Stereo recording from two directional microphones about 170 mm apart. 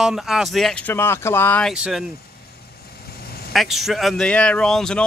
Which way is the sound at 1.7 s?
5° right (ahead or behind).